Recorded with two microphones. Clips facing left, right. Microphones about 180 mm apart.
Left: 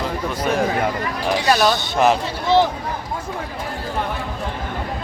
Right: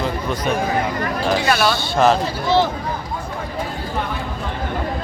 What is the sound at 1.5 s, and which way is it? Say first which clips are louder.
Speech: even; 20° left (ahead or behind).